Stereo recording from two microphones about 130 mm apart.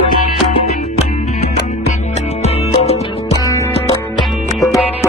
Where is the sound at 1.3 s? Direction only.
60° left (ahead or behind).